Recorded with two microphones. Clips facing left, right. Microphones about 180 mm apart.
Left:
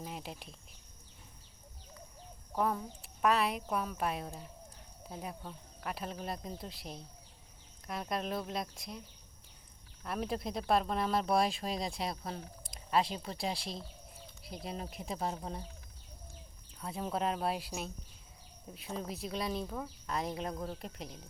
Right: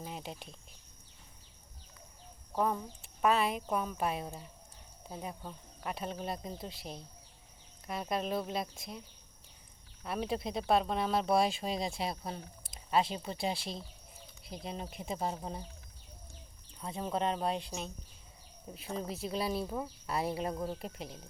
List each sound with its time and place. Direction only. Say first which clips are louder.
0.0 s cricket: right 1 dB; centre (ahead or behind)
2.6 s speech: right 1 dB; centre (ahead or behind)
10.0 s speech: right 1 dB; centre (ahead or behind)
16.8 s speech: right 1 dB; centre (ahead or behind)